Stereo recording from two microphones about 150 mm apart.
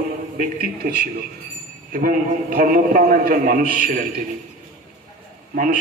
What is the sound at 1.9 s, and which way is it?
A man's voice, 70° right (ahead or behind).